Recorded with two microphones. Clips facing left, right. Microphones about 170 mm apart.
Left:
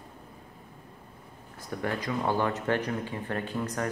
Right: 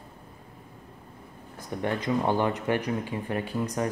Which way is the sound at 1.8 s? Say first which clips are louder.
Right 4 dB; 20° right (ahead or behind).